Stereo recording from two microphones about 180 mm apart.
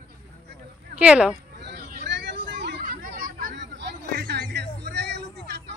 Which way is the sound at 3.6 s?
70° right (ahead or behind).